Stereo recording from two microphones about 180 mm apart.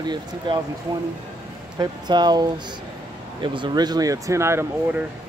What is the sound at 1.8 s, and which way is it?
Speech, 25° right (ahead or behind).